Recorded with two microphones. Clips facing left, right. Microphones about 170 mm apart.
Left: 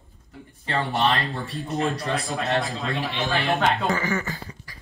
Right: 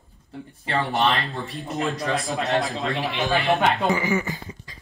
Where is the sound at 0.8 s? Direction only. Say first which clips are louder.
Right 1 dB; centre (ahead or behind).